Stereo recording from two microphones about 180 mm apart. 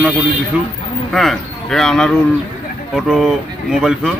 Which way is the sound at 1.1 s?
Centre (ahead or behind).